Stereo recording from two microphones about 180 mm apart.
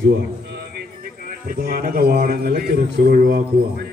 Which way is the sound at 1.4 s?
55° right (ahead or behind).